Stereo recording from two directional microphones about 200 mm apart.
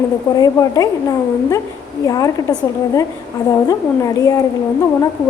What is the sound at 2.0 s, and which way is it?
A woman's voice, 15° left (ahead or behind).